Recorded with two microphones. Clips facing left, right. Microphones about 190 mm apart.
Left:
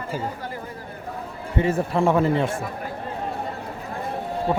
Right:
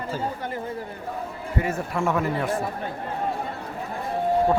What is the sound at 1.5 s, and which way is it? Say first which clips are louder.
A man's voice: left 5 dB; 30° left (ahead or behind).